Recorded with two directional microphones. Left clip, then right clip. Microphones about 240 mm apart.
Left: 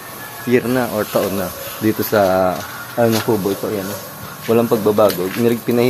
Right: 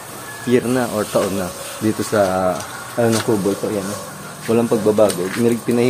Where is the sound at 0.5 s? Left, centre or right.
Centre.